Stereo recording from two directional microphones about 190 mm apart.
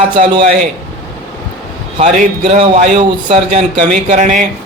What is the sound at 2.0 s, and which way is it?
Speech, 40° right (ahead or behind).